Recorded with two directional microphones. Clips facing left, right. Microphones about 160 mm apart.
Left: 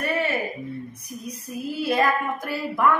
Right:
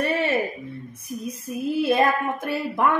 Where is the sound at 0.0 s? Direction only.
25° right (ahead or behind).